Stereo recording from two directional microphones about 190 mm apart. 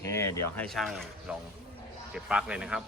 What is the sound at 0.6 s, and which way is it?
A man's voice, centre (ahead or behind).